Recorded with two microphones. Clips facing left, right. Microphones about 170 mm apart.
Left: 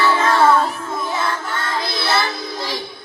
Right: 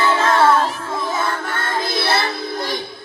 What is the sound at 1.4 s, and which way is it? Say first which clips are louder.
Music: right 1 dB; 55° right (ahead or behind).